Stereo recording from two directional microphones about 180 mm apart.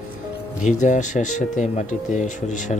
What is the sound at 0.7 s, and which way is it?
Speech, 45° left (ahead or behind).